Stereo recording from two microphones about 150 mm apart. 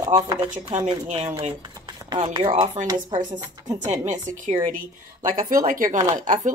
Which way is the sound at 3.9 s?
55° right (ahead or behind).